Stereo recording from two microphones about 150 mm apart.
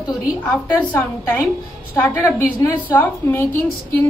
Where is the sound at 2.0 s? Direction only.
15° left (ahead or behind).